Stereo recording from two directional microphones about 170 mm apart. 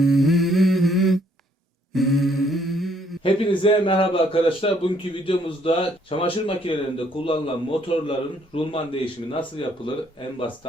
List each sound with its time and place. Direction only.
0.0 s humming: centre (ahead or behind)
1.9 s mantra: centre (ahead or behind)
3.2 s a man's voice: 30° left (ahead or behind)